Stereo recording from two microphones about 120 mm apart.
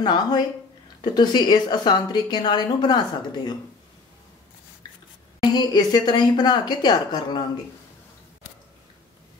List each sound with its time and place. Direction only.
0.0 s a woman's voice: 35° left (ahead or behind)
5.4 s a woman's voice: 35° left (ahead or behind)